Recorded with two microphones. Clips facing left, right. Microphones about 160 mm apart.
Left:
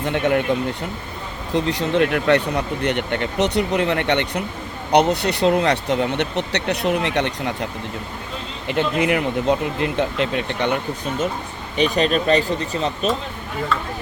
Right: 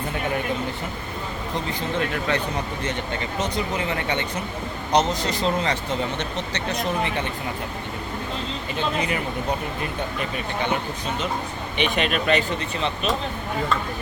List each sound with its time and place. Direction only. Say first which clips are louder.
0.0 s speech: left 7 dB; 70° left (ahead or behind)
1.5 s speech: left 8 dB; 70° left (ahead or behind)
8.6 s speech: left 8 dB; 70° left (ahead or behind)
11.8 s speech: left 5 dB; 40° left (ahead or behind)